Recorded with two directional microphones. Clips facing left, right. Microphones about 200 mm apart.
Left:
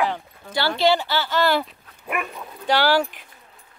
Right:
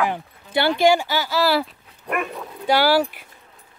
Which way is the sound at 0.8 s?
10° right (ahead or behind).